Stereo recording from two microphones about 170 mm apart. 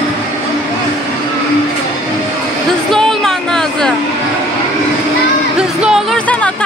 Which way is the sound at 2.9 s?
Centre (ahead or behind).